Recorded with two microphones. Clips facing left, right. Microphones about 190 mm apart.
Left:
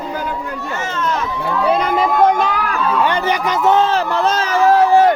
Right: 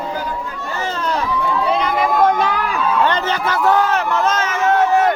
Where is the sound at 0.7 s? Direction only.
35° right (ahead or behind).